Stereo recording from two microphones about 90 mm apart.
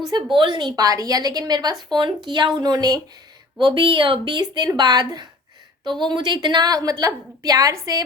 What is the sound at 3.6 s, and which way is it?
A woman's voice, 65° right (ahead or behind).